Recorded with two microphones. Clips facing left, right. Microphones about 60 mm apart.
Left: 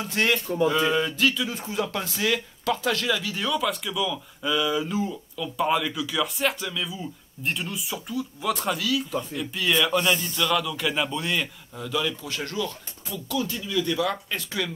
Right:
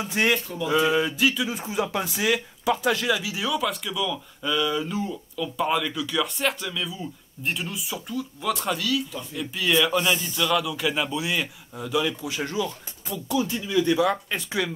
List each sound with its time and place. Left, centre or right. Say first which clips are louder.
0.0 s speech: right 1 dB; centre